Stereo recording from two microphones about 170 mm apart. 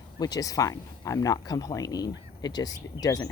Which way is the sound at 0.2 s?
20° left (ahead or behind).